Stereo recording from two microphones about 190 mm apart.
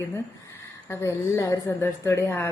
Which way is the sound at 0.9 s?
15° left (ahead or behind).